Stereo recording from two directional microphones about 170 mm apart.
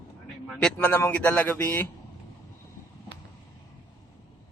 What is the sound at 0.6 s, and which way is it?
A man's voice, 10° left (ahead or behind).